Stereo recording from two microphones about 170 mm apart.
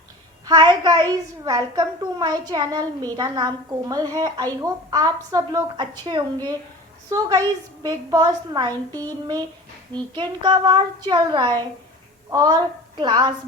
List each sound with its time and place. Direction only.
0.4 s a woman's voice: 25° right (ahead or behind)